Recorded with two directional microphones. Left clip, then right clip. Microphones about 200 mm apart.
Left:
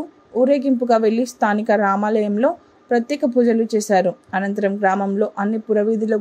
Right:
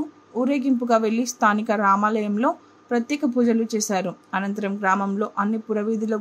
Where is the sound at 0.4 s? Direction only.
15° left (ahead or behind).